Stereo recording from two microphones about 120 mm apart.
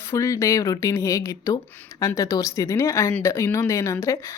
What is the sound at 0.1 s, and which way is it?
Speech, 25° left (ahead or behind).